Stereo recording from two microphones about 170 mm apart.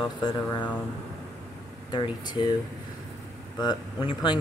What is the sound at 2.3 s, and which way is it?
Speech, 25° left (ahead or behind).